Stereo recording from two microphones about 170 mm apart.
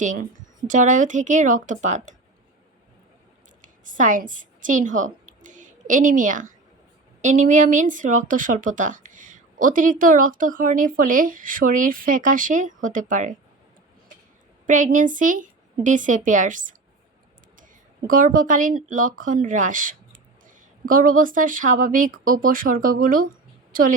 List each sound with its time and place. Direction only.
0.0 s speech: 50° right (ahead or behind)
3.6 s a woman's voice: 50° right (ahead or behind)
14.7 s speech: 50° right (ahead or behind)
18.1 s speech: 55° right (ahead or behind)